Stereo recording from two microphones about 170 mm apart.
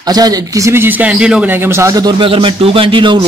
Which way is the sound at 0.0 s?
20° right (ahead or behind).